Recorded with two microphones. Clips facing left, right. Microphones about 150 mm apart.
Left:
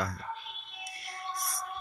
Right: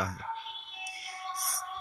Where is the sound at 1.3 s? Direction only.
35° right (ahead or behind).